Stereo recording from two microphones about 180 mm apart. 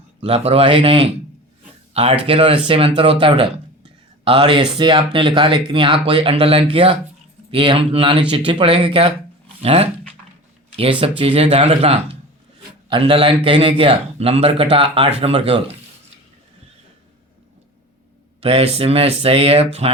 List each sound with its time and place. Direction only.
0.2 s speech: 35° right (ahead or behind)
18.3 s speech: 35° right (ahead or behind)